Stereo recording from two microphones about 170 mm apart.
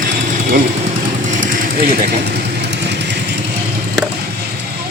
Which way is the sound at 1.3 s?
50° right (ahead or behind).